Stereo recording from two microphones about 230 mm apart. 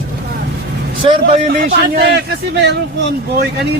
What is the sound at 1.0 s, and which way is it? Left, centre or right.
A man's voice, right.